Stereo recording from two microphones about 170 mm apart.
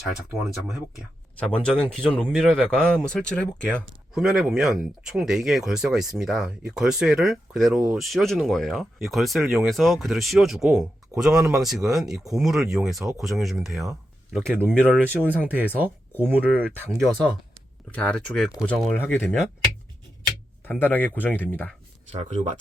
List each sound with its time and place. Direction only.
1.4 s speech: 5° left (ahead or behind); by 17.3 s 10° right (ahead or behind)
17.9 s speech: 5° left (ahead or behind)
20.7 s speech: 10° left (ahead or behind)
22.1 s speech: 40° right (ahead or behind)